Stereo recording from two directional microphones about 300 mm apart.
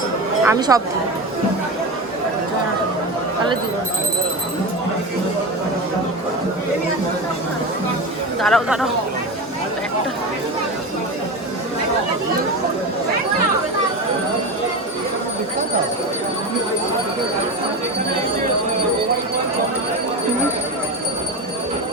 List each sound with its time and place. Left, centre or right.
0.4 s speech: centre
8.4 s speech: centre